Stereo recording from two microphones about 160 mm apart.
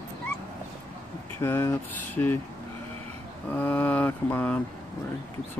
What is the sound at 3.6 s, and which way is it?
Speech, 10° left (ahead or behind).